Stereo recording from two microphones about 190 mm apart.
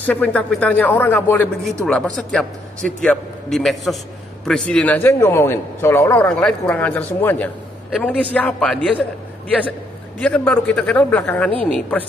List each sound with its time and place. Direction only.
0.0 s a man's voice: 10° left (ahead or behind)
10.2 s a man's voice: 5° left (ahead or behind)